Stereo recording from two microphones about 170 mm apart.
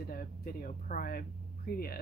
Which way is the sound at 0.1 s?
60° left (ahead or behind).